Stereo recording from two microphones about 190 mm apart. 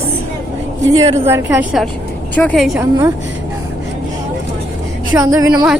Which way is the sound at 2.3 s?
5° left (ahead or behind).